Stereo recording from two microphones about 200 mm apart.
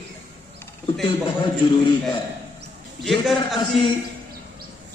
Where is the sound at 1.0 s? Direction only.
25° left (ahead or behind).